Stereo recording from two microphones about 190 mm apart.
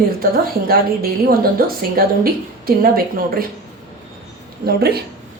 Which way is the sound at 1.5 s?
50° right (ahead or behind).